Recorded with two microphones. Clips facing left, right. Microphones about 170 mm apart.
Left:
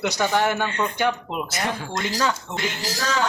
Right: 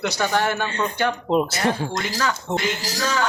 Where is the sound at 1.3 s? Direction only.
30° right (ahead or behind).